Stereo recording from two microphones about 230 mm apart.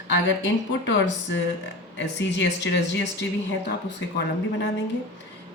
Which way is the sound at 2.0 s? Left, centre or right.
Left.